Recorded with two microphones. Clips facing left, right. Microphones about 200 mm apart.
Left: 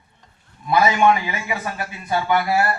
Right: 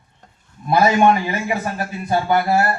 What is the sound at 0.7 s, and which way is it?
A man's voice, 45° right (ahead or behind).